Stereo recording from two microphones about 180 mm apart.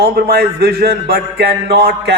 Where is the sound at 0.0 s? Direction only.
65° right (ahead or behind).